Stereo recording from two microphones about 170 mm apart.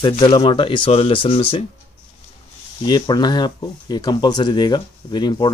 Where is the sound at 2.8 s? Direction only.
25° left (ahead or behind).